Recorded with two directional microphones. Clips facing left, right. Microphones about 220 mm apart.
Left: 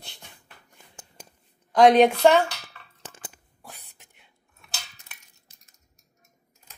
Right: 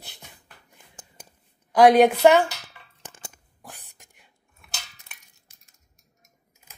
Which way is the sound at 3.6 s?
10° right (ahead or behind).